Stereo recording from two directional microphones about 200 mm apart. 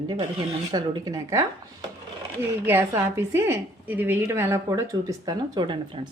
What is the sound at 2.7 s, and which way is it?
A woman's voice, 10° right (ahead or behind).